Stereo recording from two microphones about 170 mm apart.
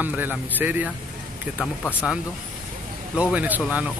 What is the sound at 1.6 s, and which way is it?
Speech, 10° left (ahead or behind).